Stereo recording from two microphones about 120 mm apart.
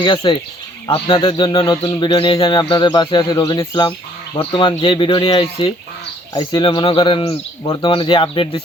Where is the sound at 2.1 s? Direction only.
50° left (ahead or behind).